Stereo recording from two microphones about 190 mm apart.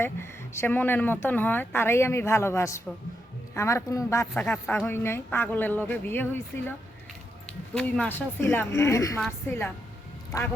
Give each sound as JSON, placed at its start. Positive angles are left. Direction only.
{"t": 0.0, "sound": "speech", "side_deg": 15}
{"t": 4.4, "sound": "speech", "side_deg": 5}
{"t": 9.2, "sound": "a woman's voice", "side_deg": 5}